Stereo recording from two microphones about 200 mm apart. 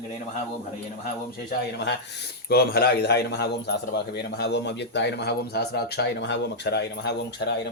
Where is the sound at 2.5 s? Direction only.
50° left (ahead or behind).